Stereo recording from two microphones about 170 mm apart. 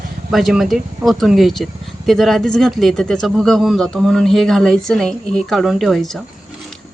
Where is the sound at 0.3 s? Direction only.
Centre (ahead or behind).